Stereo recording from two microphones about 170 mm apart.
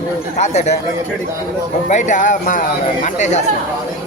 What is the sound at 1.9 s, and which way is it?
Speech, 45° left (ahead or behind).